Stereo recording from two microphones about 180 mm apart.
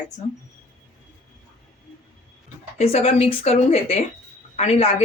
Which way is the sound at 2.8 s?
35° left (ahead or behind).